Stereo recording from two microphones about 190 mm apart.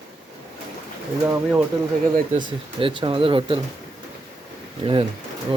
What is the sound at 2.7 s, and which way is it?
Speech, 30° right (ahead or behind).